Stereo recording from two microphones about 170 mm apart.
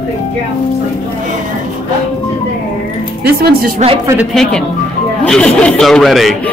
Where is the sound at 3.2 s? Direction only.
65° right (ahead or behind).